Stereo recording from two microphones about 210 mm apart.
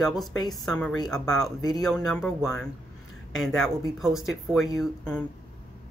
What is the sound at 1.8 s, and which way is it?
Speech, 5° left (ahead or behind).